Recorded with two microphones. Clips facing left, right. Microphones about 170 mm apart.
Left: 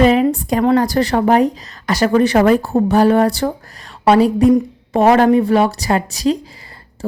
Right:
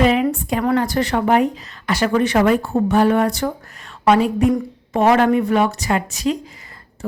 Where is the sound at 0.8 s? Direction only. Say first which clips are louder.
Left 4 dB; 35° left (ahead or behind).